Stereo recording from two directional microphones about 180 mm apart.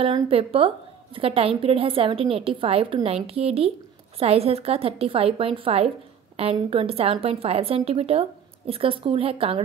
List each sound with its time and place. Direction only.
0.0 s a woman's voice: 30° right (ahead or behind)